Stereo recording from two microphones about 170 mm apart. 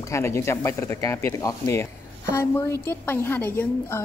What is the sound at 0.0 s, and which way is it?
A woman's voice, 15° left (ahead or behind).